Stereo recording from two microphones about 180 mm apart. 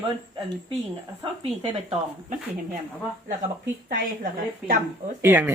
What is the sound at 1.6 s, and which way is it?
Speech, 30° right (ahead or behind).